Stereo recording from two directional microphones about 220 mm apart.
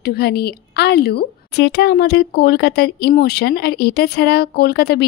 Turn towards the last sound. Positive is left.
turn(degrees=45)  # may be behind; listen again after turning